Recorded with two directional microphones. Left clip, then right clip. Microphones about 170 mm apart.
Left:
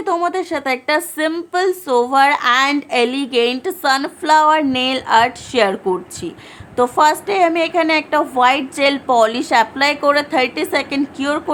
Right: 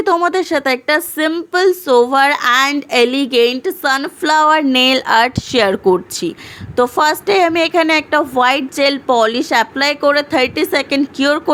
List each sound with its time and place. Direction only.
0.0 s a woman's voice: 25° right (ahead or behind)
4.3 s a woman's voice: 30° right (ahead or behind)